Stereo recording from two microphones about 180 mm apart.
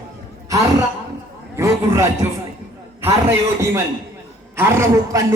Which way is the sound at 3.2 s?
15° right (ahead or behind).